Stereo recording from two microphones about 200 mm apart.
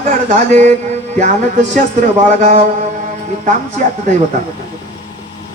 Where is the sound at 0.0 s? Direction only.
40° right (ahead or behind).